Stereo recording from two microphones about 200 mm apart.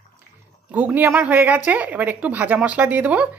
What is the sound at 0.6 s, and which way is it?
Speech, 10° right (ahead or behind).